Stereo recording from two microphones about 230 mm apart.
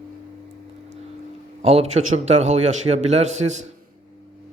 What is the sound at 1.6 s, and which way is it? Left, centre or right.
A man's voice, right.